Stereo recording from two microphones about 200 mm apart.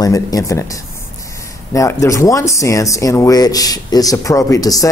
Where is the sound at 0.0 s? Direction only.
15° left (ahead or behind).